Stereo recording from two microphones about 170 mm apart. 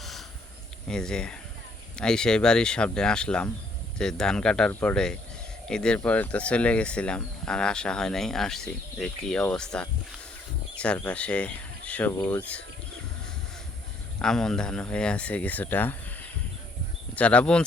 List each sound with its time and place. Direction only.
0.0 s a sound: centre (ahead or behind)
0.9 s speech: 5° left (ahead or behind)
14.2 s speech: 5° left (ahead or behind)